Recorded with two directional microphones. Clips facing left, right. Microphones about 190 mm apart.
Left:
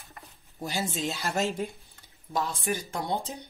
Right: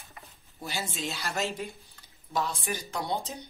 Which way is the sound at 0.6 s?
45° left (ahead or behind).